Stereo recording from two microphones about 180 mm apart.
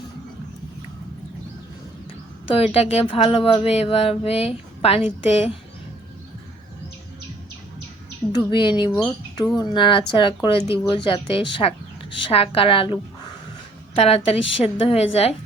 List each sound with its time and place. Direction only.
2.6 s speech: 35° left (ahead or behind)
8.3 s a woman's voice: 25° left (ahead or behind)